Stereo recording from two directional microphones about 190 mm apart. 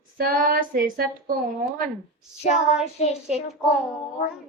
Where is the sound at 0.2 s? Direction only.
45° right (ahead or behind).